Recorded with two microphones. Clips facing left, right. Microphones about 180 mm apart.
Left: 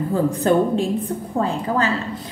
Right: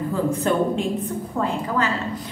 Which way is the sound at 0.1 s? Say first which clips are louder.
Left 5 dB; 35° left (ahead or behind).